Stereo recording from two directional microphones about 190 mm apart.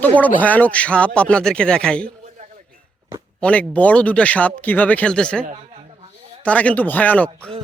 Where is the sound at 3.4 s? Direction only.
5° left (ahead or behind).